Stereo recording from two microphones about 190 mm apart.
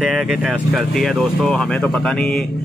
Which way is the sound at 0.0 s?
Centre (ahead or behind).